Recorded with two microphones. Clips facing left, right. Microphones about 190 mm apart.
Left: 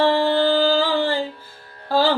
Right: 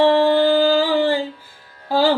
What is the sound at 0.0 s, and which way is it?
Music, 15° right (ahead or behind).